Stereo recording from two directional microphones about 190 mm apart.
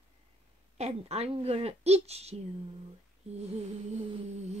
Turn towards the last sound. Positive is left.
turn(degrees=-35)  # may be behind; listen again after turning